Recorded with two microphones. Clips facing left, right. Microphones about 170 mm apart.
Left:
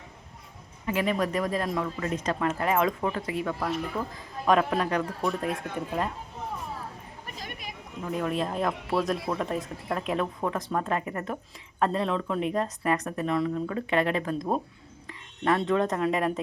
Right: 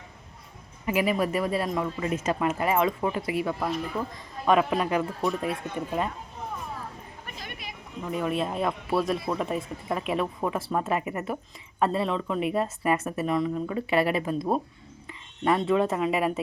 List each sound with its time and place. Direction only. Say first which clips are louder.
0.9 s a man's voice: right 2 dB; 10° right (ahead or behind)
7.3 s a sound: left 1 dB; 40° left (ahead or behind)
8.0 s a man's voice: right 1 dB; centre (ahead or behind)